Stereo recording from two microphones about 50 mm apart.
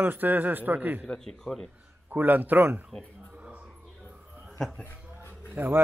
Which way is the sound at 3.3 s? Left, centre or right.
Right.